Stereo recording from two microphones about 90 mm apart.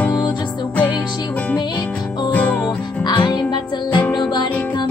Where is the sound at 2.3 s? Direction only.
15° left (ahead or behind).